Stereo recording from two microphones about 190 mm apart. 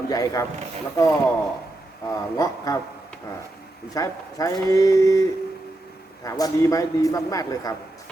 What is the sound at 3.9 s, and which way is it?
A man's voice, 20° left (ahead or behind).